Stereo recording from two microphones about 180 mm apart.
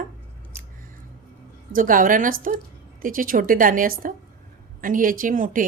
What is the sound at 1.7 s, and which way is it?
A woman's voice, 50° right (ahead or behind).